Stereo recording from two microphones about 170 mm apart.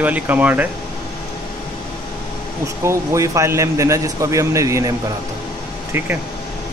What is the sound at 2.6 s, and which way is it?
A man's voice, 15° right (ahead or behind).